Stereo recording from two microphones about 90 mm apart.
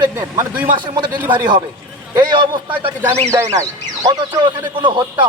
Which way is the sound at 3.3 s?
35° right (ahead or behind).